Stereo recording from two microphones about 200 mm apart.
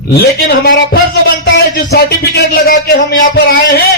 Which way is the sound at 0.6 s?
50° left (ahead or behind).